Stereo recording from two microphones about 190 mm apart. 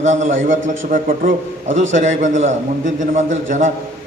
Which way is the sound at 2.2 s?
40° right (ahead or behind).